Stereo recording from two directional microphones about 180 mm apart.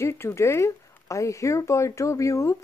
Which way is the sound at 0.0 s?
15° left (ahead or behind).